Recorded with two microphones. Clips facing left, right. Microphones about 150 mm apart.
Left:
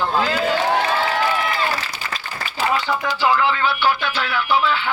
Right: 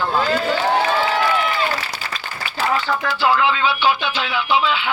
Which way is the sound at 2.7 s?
Centre (ahead or behind).